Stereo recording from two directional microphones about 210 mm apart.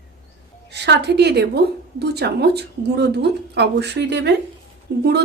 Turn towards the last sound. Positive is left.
turn(degrees=-50)  # may be behind; listen again after turning